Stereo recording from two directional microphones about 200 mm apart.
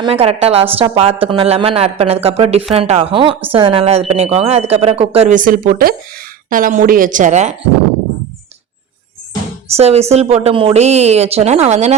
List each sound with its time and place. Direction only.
0.0 s speech: 30° right (ahead or behind)
9.7 s speech: 30° right (ahead or behind)